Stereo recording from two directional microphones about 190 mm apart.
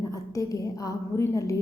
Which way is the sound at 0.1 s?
20° left (ahead or behind).